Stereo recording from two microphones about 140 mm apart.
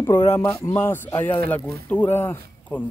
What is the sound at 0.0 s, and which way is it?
A man's voice, 20° left (ahead or behind).